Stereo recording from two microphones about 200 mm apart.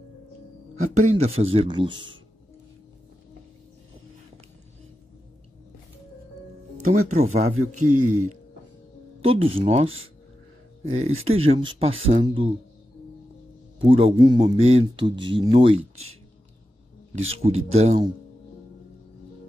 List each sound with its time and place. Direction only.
0.7 s speech: 35° right (ahead or behind)
6.8 s music: 35° right (ahead or behind)
7.2 s speech: 35° right (ahead or behind)
7.7 s speech: 90° right
9.2 s speech: 30° right (ahead or behind)
13.7 s speech: 25° right (ahead or behind)
17.3 s speech: 30° right (ahead or behind)